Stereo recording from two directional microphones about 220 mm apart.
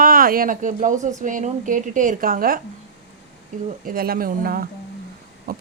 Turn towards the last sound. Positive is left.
turn(degrees=-40)  # may be behind; listen again after turning